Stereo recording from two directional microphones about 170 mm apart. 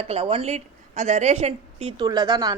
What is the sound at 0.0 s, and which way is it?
Speech, 35° right (ahead or behind).